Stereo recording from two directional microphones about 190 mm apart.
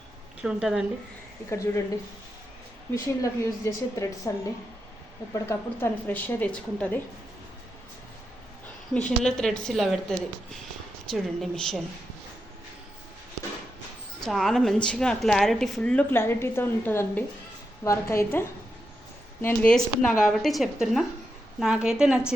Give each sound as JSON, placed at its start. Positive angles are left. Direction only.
{"t": 0.4, "sound": "a woman's voice", "side_deg": -5}
{"t": 1.5, "sound": "a woman's voice", "side_deg": 15}
{"t": 2.9, "sound": "a woman's voice", "side_deg": 15}
{"t": 5.3, "sound": "a woman's voice", "side_deg": 10}
{"t": 8.9, "sound": "a woman's voice", "side_deg": 5}
{"t": 14.2, "sound": "a woman's voice", "side_deg": 5}